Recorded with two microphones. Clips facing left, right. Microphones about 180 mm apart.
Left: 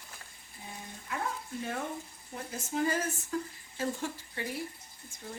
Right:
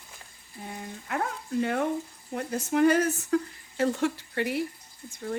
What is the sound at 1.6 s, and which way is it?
Speech, 65° right (ahead or behind).